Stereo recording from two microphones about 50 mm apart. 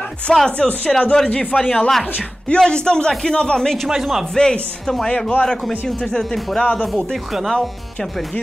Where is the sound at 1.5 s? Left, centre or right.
Centre.